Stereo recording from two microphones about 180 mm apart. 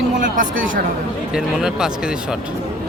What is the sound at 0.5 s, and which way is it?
Speech, 90° right.